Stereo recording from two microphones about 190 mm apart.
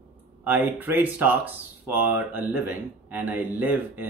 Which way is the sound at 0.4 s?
10° right (ahead or behind).